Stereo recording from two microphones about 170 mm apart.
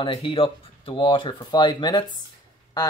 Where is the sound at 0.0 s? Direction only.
30° left (ahead or behind).